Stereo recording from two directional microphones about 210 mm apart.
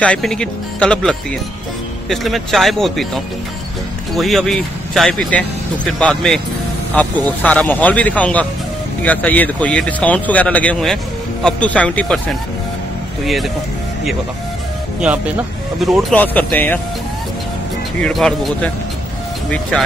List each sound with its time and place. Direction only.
0.0 s speech: 5° left (ahead or behind)
4.2 s speech: centre (ahead or behind)
15.0 s speech: 5° right (ahead or behind); by 16.8 s 10° left (ahead or behind)
18.0 s speech: 5° left (ahead or behind)